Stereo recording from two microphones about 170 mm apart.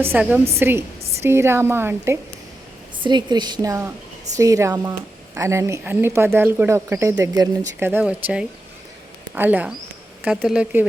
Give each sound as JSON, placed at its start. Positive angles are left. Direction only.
{"t": 0.0, "sound": "a woman's voice", "side_deg": -10}
{"t": 3.0, "sound": "a woman's voice", "side_deg": -25}